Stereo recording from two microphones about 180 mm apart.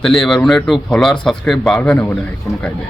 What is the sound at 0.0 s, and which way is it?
A man's voice, centre (ahead or behind).